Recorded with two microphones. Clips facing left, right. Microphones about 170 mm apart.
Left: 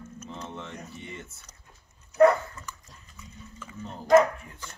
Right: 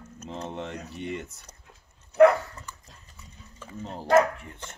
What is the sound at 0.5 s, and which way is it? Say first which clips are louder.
Speech: right 5 dB; 70° right (ahead or behind).